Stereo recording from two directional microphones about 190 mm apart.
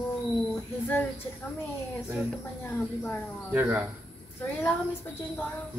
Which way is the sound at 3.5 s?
10° right (ahead or behind).